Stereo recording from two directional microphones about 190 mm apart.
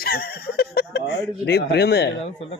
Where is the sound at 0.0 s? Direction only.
55° left (ahead or behind).